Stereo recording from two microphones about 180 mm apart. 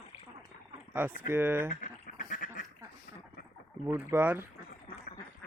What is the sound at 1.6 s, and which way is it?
Duck, 50° left (ahead or behind).